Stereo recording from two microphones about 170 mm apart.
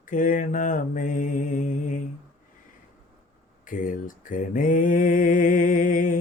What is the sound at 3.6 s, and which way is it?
Mantra, 55° left (ahead or behind).